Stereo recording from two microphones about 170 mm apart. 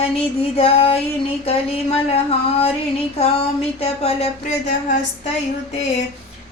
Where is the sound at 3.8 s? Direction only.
35° left (ahead or behind).